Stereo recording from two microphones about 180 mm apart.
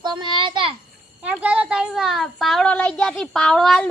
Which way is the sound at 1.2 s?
5° right (ahead or behind).